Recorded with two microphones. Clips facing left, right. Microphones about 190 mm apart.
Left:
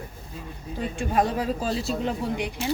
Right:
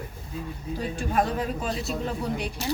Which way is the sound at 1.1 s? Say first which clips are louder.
Left 2 dB; 25° left (ahead or behind).